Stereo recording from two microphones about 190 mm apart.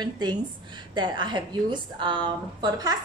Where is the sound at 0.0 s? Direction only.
20° right (ahead or behind).